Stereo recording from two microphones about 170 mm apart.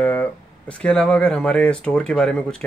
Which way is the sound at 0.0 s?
10° left (ahead or behind).